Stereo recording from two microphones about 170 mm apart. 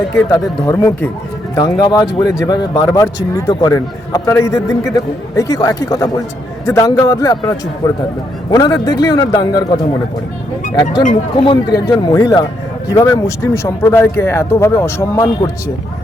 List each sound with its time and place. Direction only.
0.1 s speech: 15° left (ahead or behind)
11.3 s speech: 30° left (ahead or behind)